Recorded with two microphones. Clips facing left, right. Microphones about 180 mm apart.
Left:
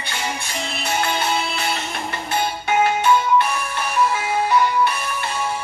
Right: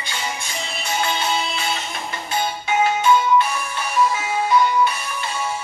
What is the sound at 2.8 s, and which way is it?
Music, 60° left (ahead or behind).